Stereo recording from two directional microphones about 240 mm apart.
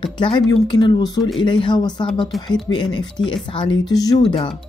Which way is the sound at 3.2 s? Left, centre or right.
Left.